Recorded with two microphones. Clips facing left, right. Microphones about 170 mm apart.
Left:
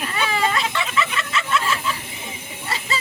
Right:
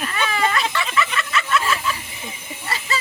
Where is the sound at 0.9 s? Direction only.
25° left (ahead or behind).